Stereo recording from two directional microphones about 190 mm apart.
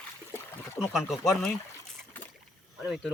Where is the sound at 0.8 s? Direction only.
Centre (ahead or behind).